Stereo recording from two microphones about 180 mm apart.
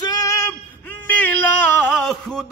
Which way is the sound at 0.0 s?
20° left (ahead or behind).